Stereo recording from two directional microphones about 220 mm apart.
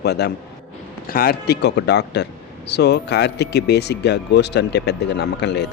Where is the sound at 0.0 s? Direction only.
50° left (ahead or behind).